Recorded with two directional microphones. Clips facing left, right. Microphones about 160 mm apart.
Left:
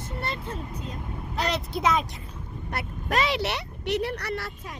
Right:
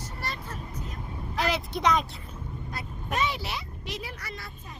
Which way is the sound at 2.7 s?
80° left.